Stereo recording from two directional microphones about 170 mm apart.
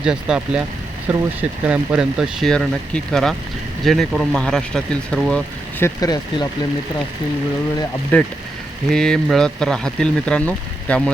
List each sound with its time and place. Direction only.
0.0 s speech: 5° right (ahead or behind)
5.8 s speech: 20° left (ahead or behind)
8.1 s speech: 10° left (ahead or behind)